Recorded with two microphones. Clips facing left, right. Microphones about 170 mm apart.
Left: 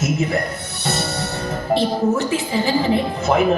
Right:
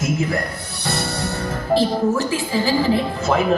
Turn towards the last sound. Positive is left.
turn(degrees=20)  # may be behind; listen again after turning